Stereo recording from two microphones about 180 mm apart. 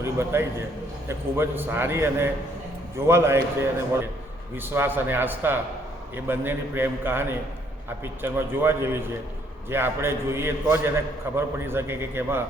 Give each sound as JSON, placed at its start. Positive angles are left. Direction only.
{"t": 0.0, "sound": "a man's voice", "side_deg": -15}